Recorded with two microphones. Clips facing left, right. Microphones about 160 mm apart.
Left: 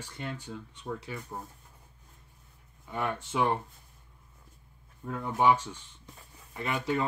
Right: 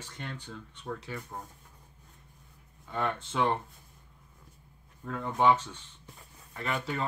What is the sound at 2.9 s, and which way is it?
Speech, 10° left (ahead or behind).